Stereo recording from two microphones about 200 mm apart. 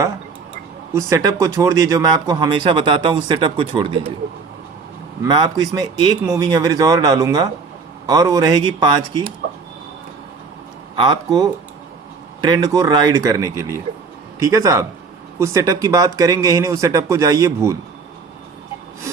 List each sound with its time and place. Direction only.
0.9 s speech: 15° right (ahead or behind)
5.2 s speech: 20° right (ahead or behind)
10.9 s speech: 20° right (ahead or behind)